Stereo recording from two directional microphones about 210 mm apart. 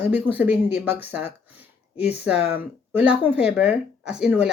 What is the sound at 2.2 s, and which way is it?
Speech, 50° left (ahead or behind).